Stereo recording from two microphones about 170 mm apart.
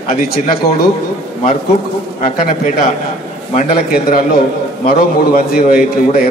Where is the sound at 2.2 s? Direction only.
55° left (ahead or behind).